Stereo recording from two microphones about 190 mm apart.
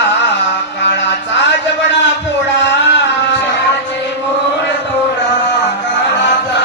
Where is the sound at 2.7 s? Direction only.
65° left (ahead or behind).